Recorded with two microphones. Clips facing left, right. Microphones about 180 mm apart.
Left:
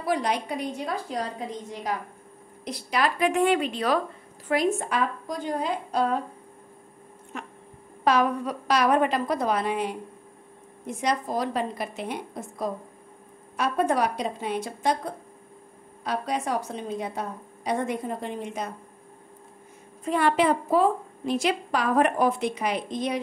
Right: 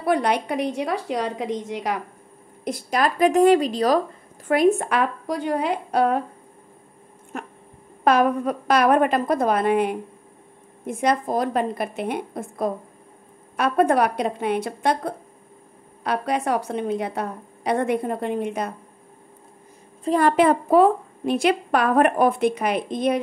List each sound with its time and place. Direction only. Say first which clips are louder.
0.0 s a woman's voice: right 5 dB; 60° right (ahead or behind); by 2.0 s 80° right
2.6 s a woman's voice: right 4 dB; 45° right (ahead or behind)
4.5 s a woman's voice: right 6 dB; 60° right (ahead or behind)
7.3 s a woman's voice: right 5 dB; 45° right (ahead or behind); by 18.7 s 60° right (ahead or behind)
20.1 s a woman's voice: right 5 dB; 45° right (ahead or behind)